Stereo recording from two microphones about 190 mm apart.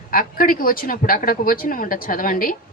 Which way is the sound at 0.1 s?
50° left (ahead or behind).